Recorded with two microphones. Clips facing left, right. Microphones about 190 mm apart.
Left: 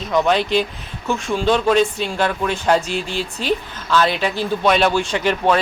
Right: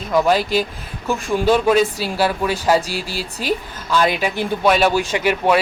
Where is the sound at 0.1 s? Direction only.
5° right (ahead or behind).